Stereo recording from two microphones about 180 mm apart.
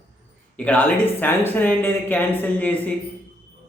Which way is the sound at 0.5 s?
10° left (ahead or behind).